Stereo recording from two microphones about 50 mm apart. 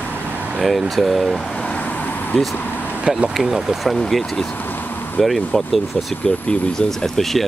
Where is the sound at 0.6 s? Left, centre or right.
Centre.